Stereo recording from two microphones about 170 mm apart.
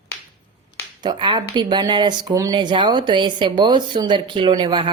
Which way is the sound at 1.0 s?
25° right (ahead or behind).